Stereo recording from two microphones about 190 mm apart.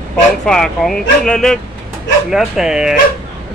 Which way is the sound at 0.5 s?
5° left (ahead or behind).